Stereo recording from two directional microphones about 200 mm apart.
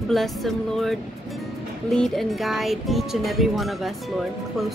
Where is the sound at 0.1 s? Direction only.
Centre (ahead or behind).